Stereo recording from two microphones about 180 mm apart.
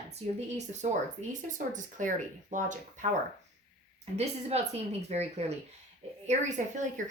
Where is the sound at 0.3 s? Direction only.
40° right (ahead or behind).